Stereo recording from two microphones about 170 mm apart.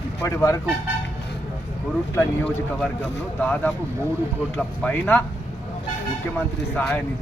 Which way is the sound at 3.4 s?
10° left (ahead or behind).